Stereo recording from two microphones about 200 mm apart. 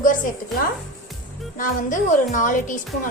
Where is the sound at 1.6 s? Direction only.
40° left (ahead or behind).